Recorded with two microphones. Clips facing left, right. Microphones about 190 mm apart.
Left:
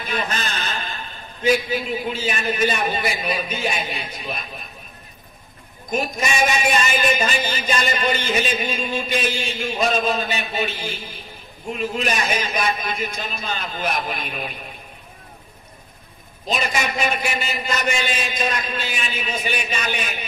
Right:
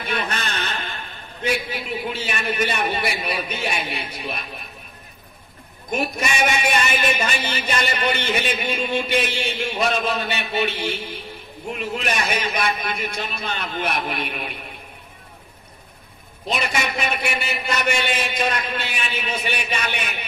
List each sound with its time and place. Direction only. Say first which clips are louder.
0.0 s a sound: even; 65° right (ahead or behind)
1.4 s a man's voice: left 5 dB; 65° right (ahead or behind)
5.9 s a man's voice: left 1 dB; 65° right (ahead or behind)
16.4 s a man's voice: left 1 dB; 60° right (ahead or behind)